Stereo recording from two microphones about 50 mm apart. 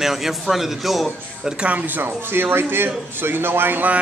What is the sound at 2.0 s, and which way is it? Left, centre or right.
A man's voice, right.